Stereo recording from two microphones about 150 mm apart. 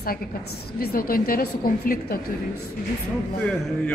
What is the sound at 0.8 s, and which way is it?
A woman's voice, 80° left.